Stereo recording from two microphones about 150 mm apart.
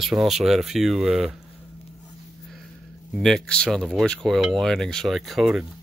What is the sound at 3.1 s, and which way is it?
Speech, centre (ahead or behind).